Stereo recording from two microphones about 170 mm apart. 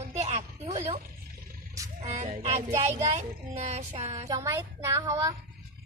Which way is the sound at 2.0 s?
45° right (ahead or behind).